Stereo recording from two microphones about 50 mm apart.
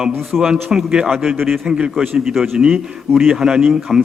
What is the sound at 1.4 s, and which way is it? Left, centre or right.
A man's voice, centre.